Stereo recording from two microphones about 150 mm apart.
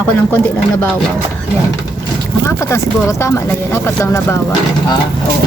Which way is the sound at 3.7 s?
20° left (ahead or behind).